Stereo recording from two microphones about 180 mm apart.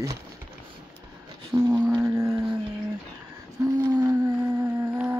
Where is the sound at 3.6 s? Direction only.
20° right (ahead or behind).